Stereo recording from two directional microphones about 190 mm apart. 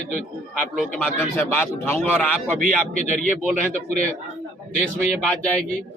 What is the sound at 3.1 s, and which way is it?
Speech, 40° left (ahead or behind).